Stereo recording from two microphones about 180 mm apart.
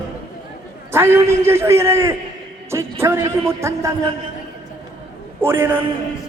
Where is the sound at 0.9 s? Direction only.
15° right (ahead or behind).